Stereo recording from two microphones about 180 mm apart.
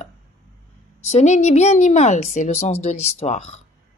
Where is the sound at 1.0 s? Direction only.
40° left (ahead or behind).